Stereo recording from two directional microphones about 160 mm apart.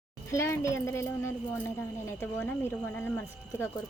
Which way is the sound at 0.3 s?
15° left (ahead or behind).